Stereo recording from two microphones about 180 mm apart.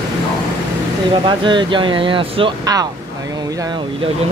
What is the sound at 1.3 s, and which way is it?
Speech, 25° right (ahead or behind).